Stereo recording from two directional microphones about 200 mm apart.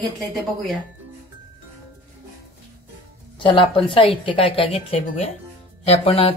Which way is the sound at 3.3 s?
25° left (ahead or behind).